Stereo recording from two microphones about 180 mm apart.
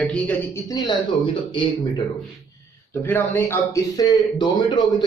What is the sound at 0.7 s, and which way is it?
Speech, 20° left (ahead or behind).